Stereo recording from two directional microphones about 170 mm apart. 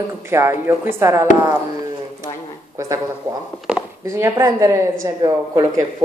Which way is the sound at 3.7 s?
5° right (ahead or behind).